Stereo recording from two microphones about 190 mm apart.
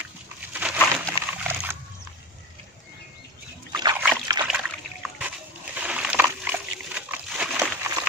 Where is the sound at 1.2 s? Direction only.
30° left (ahead or behind).